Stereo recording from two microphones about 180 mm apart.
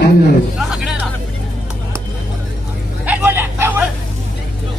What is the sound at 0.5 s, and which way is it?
Music, centre (ahead or behind).